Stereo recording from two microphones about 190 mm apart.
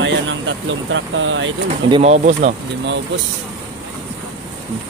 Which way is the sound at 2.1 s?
40° right (ahead or behind).